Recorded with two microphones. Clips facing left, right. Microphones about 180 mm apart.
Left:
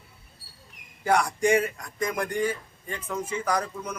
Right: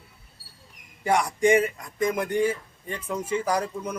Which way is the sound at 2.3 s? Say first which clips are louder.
Right 4 dB; 25° right (ahead or behind).